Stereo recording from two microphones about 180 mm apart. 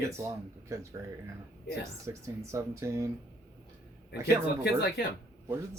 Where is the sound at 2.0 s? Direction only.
15° right (ahead or behind).